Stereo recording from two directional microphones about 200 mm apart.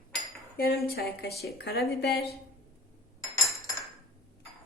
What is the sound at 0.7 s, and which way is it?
A woman's voice, 50° left (ahead or behind).